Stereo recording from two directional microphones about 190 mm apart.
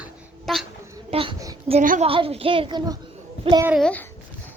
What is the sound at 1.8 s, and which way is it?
Speech, 45° right (ahead or behind).